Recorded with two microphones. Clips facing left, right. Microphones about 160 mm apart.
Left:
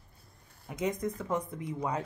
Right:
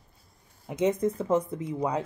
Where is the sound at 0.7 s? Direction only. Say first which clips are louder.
Right 7 dB; 25° right (ahead or behind).